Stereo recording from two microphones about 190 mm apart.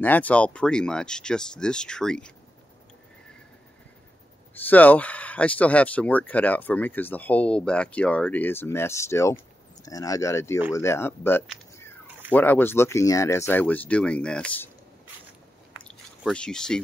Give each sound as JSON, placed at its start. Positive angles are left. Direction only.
{"t": 0.0, "sound": "speech", "side_deg": 10}
{"t": 4.6, "sound": "speech", "side_deg": 10}
{"t": 15.8, "sound": "a sound", "side_deg": 5}